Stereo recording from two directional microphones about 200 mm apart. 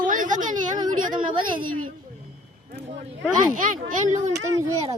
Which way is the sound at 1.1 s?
25° right (ahead or behind).